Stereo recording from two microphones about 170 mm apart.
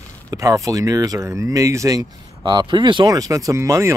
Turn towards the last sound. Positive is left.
turn(degrees=-15)  # may be behind; listen again after turning